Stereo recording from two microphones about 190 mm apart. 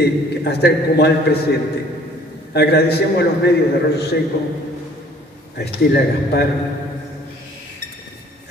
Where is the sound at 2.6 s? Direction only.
60° left (ahead or behind).